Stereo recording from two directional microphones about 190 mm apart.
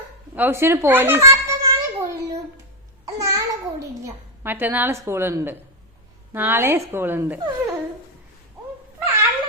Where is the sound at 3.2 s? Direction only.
20° right (ahead or behind).